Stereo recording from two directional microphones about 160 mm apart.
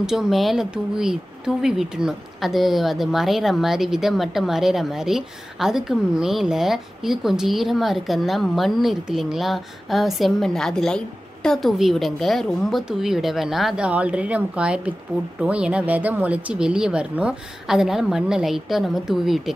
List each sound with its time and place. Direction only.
0.0 s speech: 5° right (ahead or behind)